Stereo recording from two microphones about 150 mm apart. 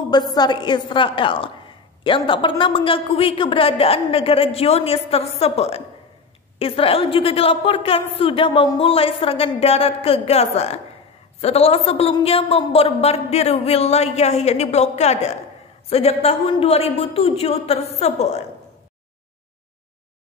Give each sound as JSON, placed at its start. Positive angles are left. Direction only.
{"t": 0.1, "sound": "a woman's voice", "side_deg": 25}